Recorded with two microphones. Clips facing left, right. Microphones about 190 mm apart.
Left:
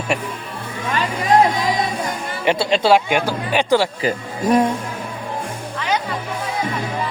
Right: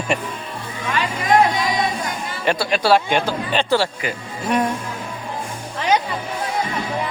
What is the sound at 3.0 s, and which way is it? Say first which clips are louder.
Speech: left 1 dB; 10° left (ahead or behind).